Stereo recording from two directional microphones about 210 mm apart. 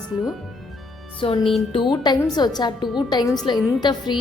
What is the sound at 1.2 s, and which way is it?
A woman's voice, 25° left (ahead or behind).